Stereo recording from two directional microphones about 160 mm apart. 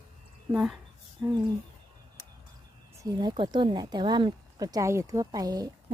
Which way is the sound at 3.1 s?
25° right (ahead or behind).